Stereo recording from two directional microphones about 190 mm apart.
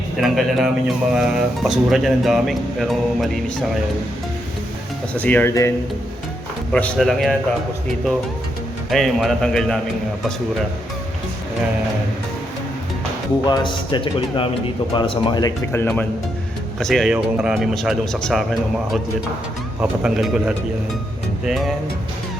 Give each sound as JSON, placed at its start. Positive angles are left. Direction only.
{"t": 0.2, "sound": "speech", "side_deg": 0}
{"t": 5.1, "sound": "speech", "side_deg": 10}
{"t": 6.7, "sound": "speech", "side_deg": 5}
{"t": 8.9, "sound": "speech", "side_deg": 0}
{"t": 13.5, "sound": "a man's voice", "side_deg": 25}
{"t": 16.8, "sound": "speech", "side_deg": 0}
{"t": 19.8, "sound": "speech", "side_deg": -5}